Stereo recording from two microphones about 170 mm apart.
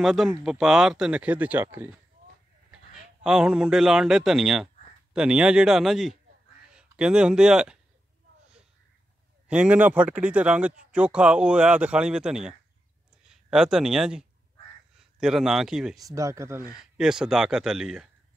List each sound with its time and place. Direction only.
0.0 s speech: centre (ahead or behind)
3.3 s speech: 5° right (ahead or behind)
9.5 s a man's voice: 5° right (ahead or behind)
16.0 s speech: 20° right (ahead or behind)
16.7 s speech: 5° right (ahead or behind)